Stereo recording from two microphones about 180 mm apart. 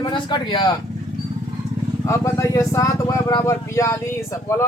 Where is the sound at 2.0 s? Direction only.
15° left (ahead or behind).